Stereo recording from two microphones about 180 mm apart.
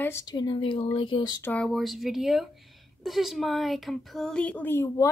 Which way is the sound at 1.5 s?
5° left (ahead or behind).